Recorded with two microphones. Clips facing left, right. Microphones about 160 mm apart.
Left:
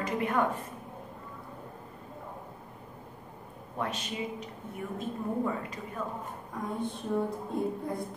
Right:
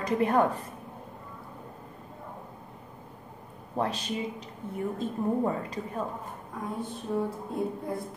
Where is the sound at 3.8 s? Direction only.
35° right (ahead or behind).